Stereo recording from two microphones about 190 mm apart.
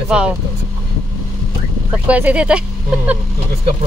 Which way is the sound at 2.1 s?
5° right (ahead or behind).